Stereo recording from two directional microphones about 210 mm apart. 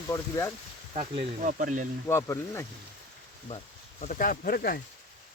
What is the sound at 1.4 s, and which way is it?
Speech, 40° right (ahead or behind).